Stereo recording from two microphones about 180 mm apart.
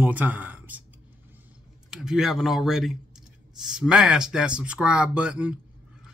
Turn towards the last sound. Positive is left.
turn(degrees=-5)  # may be behind; listen again after turning